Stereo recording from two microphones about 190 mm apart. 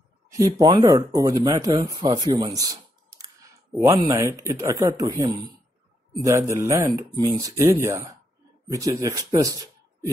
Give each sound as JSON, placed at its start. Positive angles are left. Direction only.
{"t": 0.3, "sound": "speech", "side_deg": -20}